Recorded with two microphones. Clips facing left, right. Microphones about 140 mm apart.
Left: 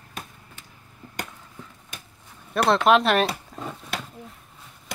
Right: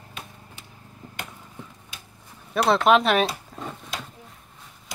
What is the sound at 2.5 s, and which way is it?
Speech, centre (ahead or behind).